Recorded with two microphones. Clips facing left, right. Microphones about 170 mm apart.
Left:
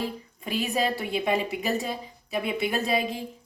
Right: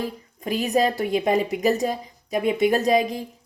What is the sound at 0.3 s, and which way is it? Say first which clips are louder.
A woman's voice: right 6 dB; 40° right (ahead or behind).